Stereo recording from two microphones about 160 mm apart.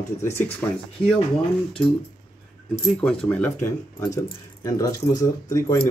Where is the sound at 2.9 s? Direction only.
5° left (ahead or behind).